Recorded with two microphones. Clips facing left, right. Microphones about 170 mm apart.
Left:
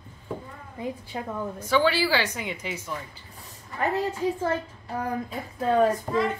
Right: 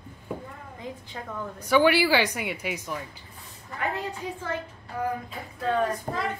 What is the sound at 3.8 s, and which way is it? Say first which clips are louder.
Speech: left 6 dB; 40° left (ahead or behind).